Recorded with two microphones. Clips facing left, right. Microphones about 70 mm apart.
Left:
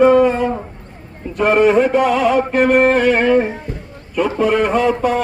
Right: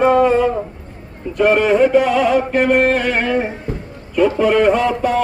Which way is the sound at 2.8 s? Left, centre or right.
Left.